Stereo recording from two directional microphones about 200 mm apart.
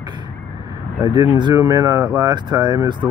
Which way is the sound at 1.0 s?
20° right (ahead or behind).